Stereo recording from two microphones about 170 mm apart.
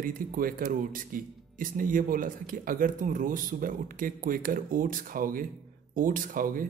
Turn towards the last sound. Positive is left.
turn(degrees=-55)  # may be behind; listen again after turning